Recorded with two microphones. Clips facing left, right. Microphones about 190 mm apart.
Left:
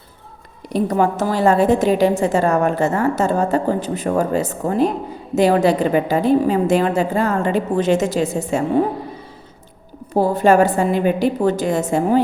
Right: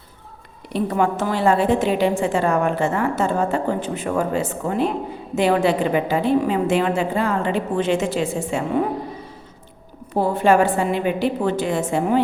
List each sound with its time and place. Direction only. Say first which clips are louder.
0.7 s a woman's voice: left 3 dB; 40° left (ahead or behind)
10.2 s a woman's voice: left 3 dB; 40° left (ahead or behind)